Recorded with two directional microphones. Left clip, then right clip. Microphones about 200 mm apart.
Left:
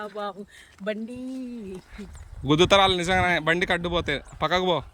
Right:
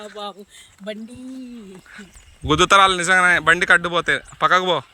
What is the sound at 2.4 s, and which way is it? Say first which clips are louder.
Speech: right 5 dB; 5° left (ahead or behind).